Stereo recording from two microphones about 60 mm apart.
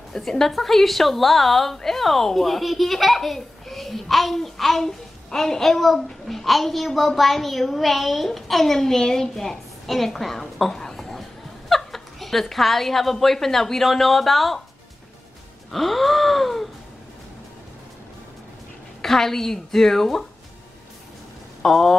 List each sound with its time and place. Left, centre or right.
0.1 s a woman's voice: centre
15.7 s a woman's voice: centre
18.9 s a woman's voice: centre
21.6 s a woman's voice: centre